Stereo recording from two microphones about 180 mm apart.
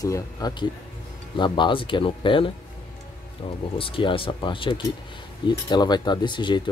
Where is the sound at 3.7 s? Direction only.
30° left (ahead or behind).